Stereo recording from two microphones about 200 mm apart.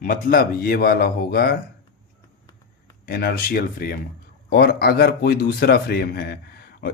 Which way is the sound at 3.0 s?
50° left (ahead or behind).